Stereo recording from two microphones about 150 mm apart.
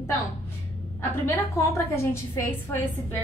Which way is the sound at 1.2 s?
15° left (ahead or behind).